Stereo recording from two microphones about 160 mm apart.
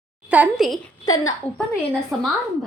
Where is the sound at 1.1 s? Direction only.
20° left (ahead or behind).